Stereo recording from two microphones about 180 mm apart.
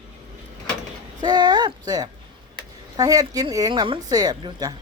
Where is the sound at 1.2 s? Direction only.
25° right (ahead or behind).